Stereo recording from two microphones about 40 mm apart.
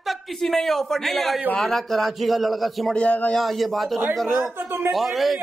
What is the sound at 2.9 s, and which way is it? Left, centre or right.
Speech, left.